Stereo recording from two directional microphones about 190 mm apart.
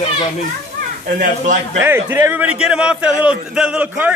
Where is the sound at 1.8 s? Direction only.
10° right (ahead or behind).